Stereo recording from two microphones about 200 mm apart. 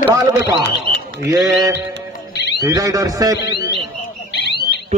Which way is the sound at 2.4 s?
55° left (ahead or behind).